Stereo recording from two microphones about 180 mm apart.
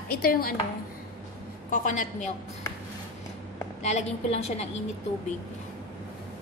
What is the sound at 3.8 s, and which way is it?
Speech, 35° left (ahead or behind).